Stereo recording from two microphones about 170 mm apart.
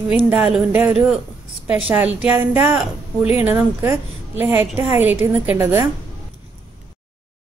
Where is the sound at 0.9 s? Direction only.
Centre (ahead or behind).